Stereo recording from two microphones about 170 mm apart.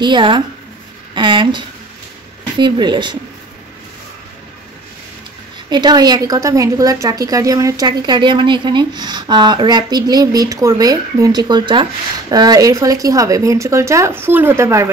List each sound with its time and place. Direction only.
0.0 s a woman's voice: 30° right (ahead or behind)
2.6 s a woman's voice: 25° right (ahead or behind)
5.7 s a woman's voice: 25° right (ahead or behind)